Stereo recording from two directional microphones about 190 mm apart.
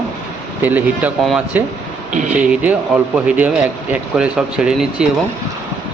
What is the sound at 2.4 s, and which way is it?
Speech, 5° right (ahead or behind).